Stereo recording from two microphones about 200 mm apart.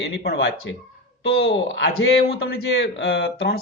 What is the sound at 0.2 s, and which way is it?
A man's voice, 55° left (ahead or behind).